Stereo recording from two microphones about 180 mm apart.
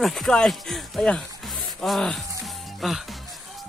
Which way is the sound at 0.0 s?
Centre (ahead or behind).